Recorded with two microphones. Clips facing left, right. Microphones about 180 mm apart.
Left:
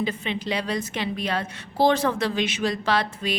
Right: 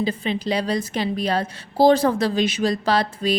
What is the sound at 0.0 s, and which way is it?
A woman's voice, 35° right (ahead or behind).